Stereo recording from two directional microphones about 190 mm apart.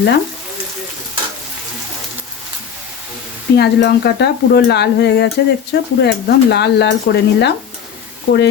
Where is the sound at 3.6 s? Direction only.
60° left (ahead or behind).